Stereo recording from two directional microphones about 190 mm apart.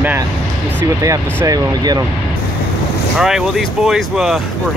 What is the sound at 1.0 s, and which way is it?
Speech, 15° right (ahead or behind).